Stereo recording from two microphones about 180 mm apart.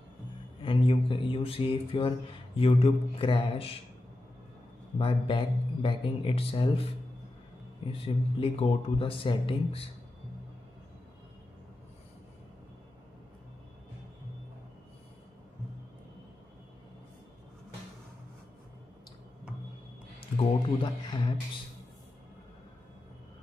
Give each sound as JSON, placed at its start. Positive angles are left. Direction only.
{"t": 0.6, "sound": "speech", "side_deg": 30}
{"t": 4.9, "sound": "speech", "side_deg": 30}
{"t": 20.2, "sound": "speech", "side_deg": 30}